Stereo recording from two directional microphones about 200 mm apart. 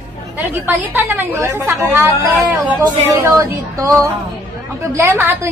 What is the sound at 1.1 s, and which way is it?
Speech, 10° right (ahead or behind).